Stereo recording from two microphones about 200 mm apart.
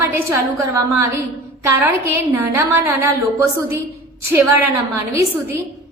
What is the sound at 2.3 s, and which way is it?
A woman's voice, 15° right (ahead or behind).